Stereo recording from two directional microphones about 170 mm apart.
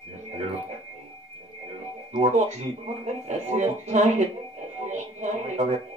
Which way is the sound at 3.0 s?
45° right (ahead or behind).